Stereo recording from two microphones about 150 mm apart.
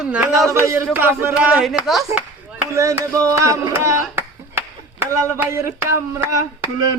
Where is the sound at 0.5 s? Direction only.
15° right (ahead or behind); by 2.0 s centre (ahead or behind).